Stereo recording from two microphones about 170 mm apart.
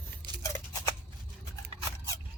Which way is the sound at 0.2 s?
70° right (ahead or behind).